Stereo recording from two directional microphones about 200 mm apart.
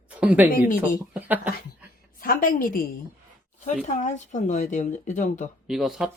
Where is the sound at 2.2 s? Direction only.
45° left (ahead or behind).